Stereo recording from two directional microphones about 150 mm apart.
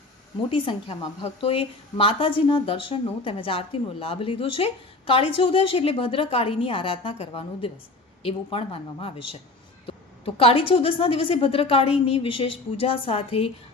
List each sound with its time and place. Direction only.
0.5 s a woman's voice: 35° left (ahead or behind)